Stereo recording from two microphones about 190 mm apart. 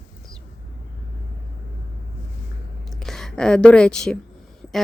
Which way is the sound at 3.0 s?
Centre (ahead or behind).